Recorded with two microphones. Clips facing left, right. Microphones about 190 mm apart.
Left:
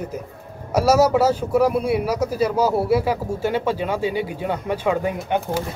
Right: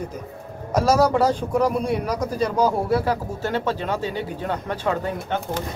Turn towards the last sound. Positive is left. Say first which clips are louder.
# left 3 dB
turn(degrees=10)  # may be behind; listen again after turning